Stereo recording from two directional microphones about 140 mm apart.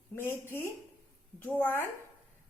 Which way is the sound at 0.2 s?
15° left (ahead or behind).